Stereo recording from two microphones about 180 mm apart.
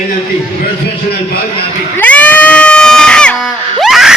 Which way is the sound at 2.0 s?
10° left (ahead or behind).